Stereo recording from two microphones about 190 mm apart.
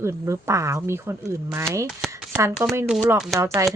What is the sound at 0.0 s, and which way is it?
Speech, 15° right (ahead or behind).